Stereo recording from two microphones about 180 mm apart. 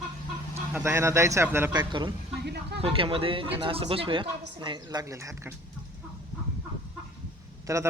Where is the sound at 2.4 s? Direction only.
65° right (ahead or behind).